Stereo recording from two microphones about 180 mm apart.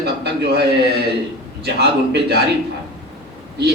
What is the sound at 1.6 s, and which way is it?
Speech, 65° right (ahead or behind).